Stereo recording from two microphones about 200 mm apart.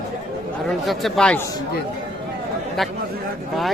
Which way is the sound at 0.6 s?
Centre (ahead or behind).